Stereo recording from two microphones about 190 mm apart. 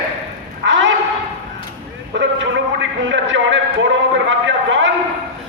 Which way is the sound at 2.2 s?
70° right (ahead or behind).